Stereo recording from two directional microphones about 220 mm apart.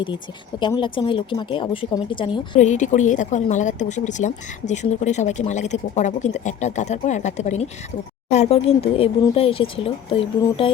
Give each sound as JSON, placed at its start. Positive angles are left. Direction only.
{"t": 0.6, "sound": "speech", "side_deg": 20}
{"t": 2.6, "sound": "speech", "side_deg": 35}